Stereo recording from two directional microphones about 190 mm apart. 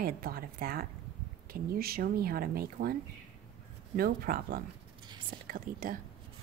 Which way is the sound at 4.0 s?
50° right (ahead or behind).